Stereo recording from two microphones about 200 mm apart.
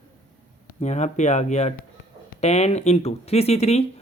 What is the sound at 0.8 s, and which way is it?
Speech, 35° left (ahead or behind).